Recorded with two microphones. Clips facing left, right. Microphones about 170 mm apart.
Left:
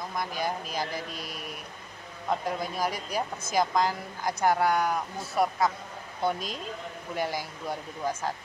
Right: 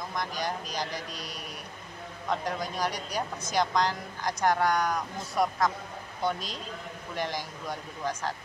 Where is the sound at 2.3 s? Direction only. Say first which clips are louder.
Left 1 dB; 5° left (ahead or behind).